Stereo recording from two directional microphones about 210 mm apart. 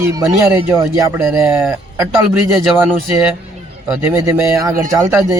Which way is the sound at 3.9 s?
15° right (ahead or behind).